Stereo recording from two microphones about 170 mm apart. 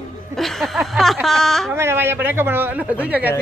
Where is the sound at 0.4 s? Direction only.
Centre (ahead or behind).